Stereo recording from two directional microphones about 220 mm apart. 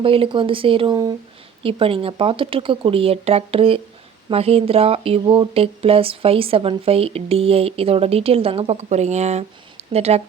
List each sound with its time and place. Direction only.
0.0 s speech: 25° right (ahead or behind)